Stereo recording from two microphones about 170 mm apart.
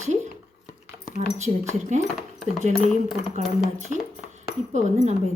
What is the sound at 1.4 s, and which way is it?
Speech, 45° right (ahead or behind).